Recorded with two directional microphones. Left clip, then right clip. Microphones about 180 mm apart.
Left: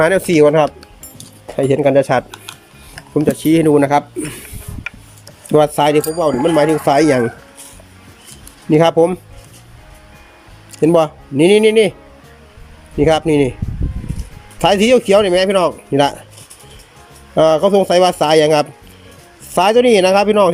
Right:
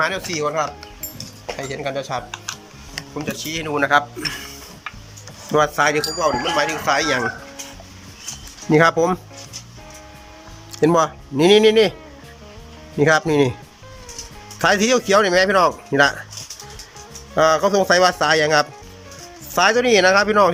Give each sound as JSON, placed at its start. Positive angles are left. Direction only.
{"t": 0.0, "sound": "speech", "side_deg": 50}
{"t": 3.2, "sound": "speech", "side_deg": 45}
{"t": 5.5, "sound": "speech", "side_deg": 25}
{"t": 6.1, "sound": "speech", "side_deg": 30}
{"t": 8.7, "sound": "speech", "side_deg": 15}
{"t": 10.8, "sound": "speech", "side_deg": 15}
{"t": 13.0, "sound": "speech", "side_deg": 15}
{"t": 14.6, "sound": "speech", "side_deg": 20}
{"t": 17.3, "sound": "speech", "side_deg": 20}